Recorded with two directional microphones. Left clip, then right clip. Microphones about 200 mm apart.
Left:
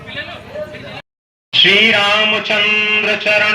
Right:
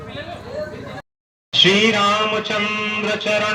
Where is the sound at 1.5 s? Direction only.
35° left (ahead or behind).